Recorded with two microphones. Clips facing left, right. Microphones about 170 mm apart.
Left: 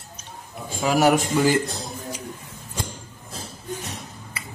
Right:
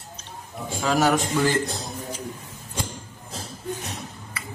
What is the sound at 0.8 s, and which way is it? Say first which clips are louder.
Speech: left 3 dB; 10° left (ahead or behind).